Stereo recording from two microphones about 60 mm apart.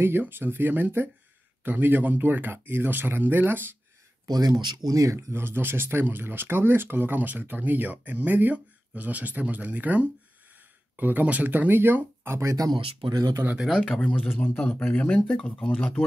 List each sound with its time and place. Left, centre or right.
0.0 s speech: right
4.3 s speech: right
5.3 s speech: right
12.4 s speech: right
14.0 s speech: left